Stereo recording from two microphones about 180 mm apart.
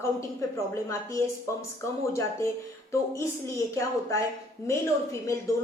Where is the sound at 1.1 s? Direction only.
15° left (ahead or behind).